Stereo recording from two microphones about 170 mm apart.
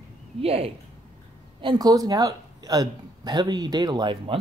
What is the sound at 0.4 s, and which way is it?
Speech, 35° right (ahead or behind).